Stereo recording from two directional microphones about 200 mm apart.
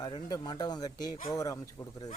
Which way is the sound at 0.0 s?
20° left (ahead or behind).